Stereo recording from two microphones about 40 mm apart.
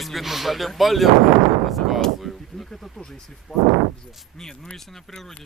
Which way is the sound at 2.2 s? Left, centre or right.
Centre.